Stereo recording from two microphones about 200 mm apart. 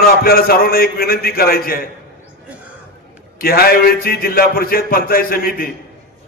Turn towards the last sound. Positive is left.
turn(degrees=45)  # may be behind; listen again after turning